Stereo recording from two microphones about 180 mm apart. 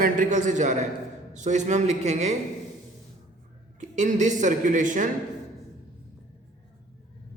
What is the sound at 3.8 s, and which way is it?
Speech, 40° right (ahead or behind).